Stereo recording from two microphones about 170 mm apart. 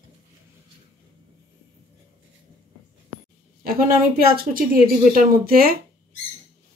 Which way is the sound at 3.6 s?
60° right (ahead or behind).